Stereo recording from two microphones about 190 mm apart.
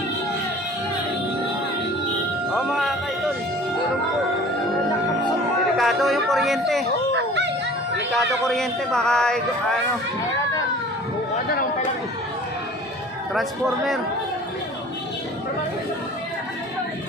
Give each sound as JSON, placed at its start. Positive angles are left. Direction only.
{"t": 2.5, "sound": "music", "side_deg": 0}
{"t": 5.8, "sound": "a sound", "side_deg": 0}
{"t": 7.3, "sound": "music", "side_deg": -65}
{"t": 8.2, "sound": "speech", "side_deg": 0}
{"t": 13.3, "sound": "speech", "side_deg": 0}